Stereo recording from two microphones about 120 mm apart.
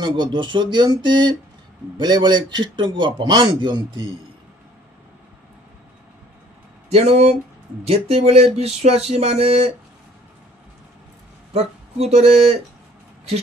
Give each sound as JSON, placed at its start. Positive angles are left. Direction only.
{"t": 0.0, "sound": "a man's voice", "side_deg": -40}
{"t": 6.9, "sound": "speech", "side_deg": -60}
{"t": 11.5, "sound": "speech", "side_deg": -60}